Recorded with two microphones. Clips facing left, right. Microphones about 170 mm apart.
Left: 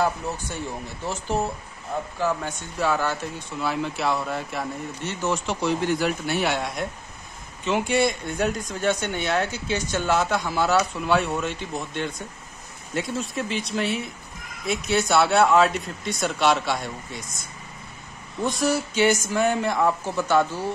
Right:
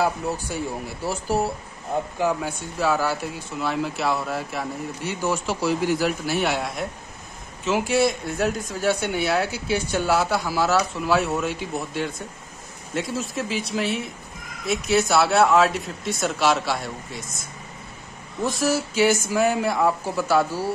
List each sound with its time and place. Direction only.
0.0 s speech: 10° right (ahead or behind)
18.4 s speech: 5° right (ahead or behind)